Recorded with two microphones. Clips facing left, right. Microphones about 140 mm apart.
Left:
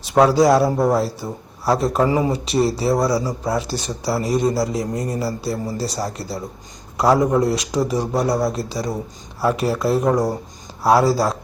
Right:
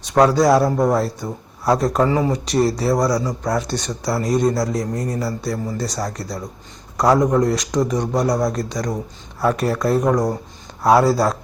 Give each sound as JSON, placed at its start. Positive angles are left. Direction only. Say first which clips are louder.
{"t": 0.1, "sound": "speech", "louder": "even", "side_deg": 5}
{"t": 2.0, "sound": "speech", "louder": "even", "side_deg": 15}
{"t": 2.5, "sound": "speech", "louder": "right 1 dB", "side_deg": 0}
{"t": 6.2, "sound": "speech", "louder": "even", "side_deg": 30}
{"t": 6.9, "sound": "speech", "louder": "even", "side_deg": 5}